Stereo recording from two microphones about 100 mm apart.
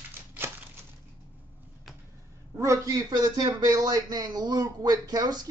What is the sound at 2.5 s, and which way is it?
Speech, 30° right (ahead or behind).